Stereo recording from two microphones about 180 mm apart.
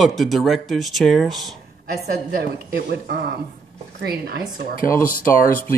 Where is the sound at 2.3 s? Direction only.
60° right (ahead or behind).